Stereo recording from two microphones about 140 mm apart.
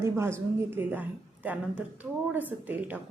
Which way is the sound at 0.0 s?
20° right (ahead or behind).